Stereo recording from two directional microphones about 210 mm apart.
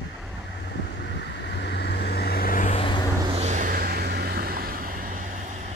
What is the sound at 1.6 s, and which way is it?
Vehicle, 55° left (ahead or behind).